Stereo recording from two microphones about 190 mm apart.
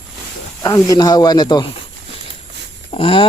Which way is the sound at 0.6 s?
15° left (ahead or behind).